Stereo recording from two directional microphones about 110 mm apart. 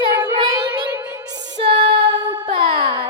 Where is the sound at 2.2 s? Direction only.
40° right (ahead or behind).